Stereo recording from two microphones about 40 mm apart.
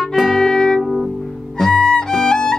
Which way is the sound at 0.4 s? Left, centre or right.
Centre.